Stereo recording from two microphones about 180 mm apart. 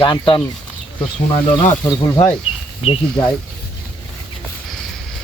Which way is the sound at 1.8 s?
15° left (ahead or behind).